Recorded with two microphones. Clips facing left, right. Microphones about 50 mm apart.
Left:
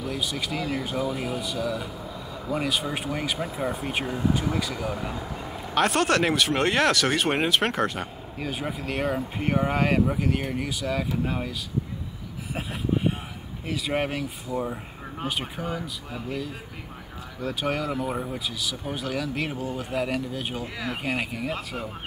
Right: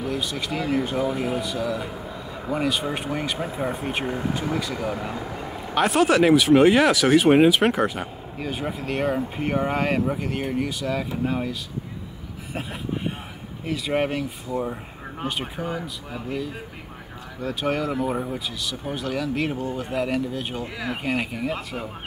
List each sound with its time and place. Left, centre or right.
0.1 s speech: centre
4.0 s speech: right
4.7 s speech: centre
12.5 s a sound: centre
13.7 s speech: centre